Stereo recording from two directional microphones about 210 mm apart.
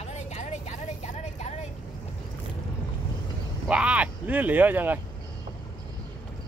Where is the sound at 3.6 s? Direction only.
5° right (ahead or behind).